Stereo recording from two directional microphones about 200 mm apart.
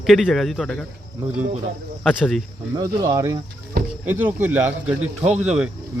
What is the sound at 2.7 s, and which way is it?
A man's voice, 15° right (ahead or behind).